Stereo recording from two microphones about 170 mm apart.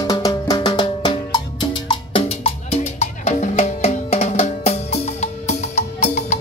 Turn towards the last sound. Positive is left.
turn(degrees=45)  # may be behind; listen again after turning